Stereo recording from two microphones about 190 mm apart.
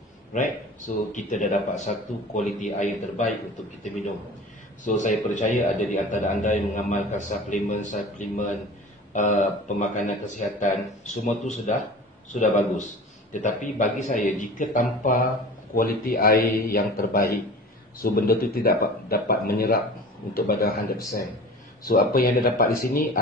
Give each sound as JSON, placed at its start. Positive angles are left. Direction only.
{"t": 0.3, "sound": "a man's voice", "side_deg": 40}
{"t": 4.8, "sound": "a man's voice", "side_deg": 40}